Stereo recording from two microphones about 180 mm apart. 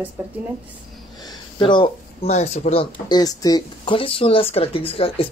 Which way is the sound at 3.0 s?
20° left (ahead or behind).